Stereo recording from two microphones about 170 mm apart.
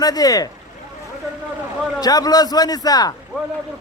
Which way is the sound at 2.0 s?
20° left (ahead or behind).